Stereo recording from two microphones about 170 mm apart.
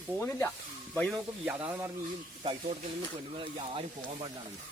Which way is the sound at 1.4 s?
10° right (ahead or behind).